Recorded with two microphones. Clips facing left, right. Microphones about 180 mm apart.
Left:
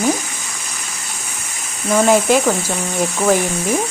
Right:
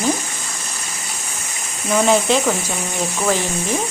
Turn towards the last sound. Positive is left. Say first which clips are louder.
# left 4 dB
turn(degrees=10)  # may be behind; listen again after turning